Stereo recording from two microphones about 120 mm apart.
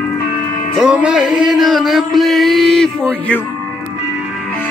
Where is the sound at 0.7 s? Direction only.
10° right (ahead or behind).